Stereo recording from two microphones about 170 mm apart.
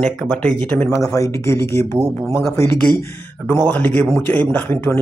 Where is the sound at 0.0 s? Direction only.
10° left (ahead or behind).